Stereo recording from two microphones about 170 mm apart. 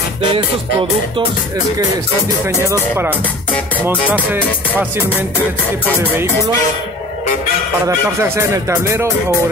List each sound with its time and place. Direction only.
2.4 s speech: 15° right (ahead or behind)
7.8 s speech: 15° right (ahead or behind)